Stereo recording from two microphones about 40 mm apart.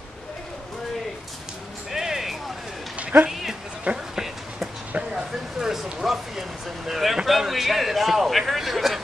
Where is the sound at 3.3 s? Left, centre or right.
Centre.